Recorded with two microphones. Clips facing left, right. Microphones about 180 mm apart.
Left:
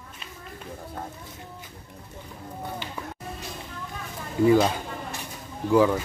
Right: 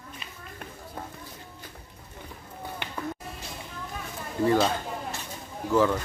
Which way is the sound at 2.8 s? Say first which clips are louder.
Left 1 dB; 60° right (ahead or behind).